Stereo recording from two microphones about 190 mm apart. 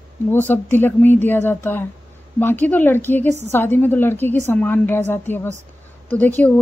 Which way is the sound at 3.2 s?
35° right (ahead or behind).